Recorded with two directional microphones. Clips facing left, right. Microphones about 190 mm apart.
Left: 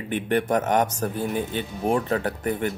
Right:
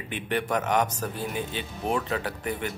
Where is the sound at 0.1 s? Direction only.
50° left (ahead or behind).